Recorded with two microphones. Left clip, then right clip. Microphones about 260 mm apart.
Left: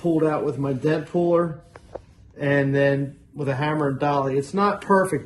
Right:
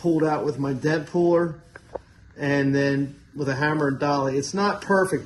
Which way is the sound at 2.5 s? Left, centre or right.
Left.